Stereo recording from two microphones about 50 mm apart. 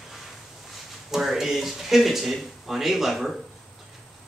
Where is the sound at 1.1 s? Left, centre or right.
Centre.